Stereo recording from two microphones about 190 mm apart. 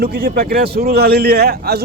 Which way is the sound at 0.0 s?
55° right (ahead or behind).